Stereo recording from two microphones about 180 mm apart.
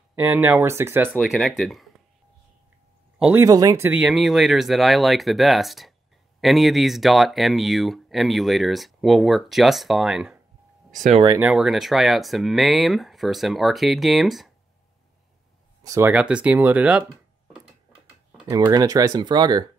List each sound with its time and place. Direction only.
0.1 s speech: 10° right (ahead or behind)
1.2 s speech: centre (ahead or behind)
3.2 s speech: 10° right (ahead or behind)
3.4 s speech: 20° right (ahead or behind); by 10.4 s centre (ahead or behind)
11.0 s speech: 40° right (ahead or behind)
11.3 s speech: 5° right (ahead or behind)
15.8 s speech: 20° right (ahead or behind)
16.1 s speech: 5° right (ahead or behind)
18.5 s speech: 20° right (ahead or behind)